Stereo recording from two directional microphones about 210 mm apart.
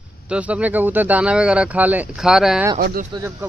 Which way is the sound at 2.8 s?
45° right (ahead or behind).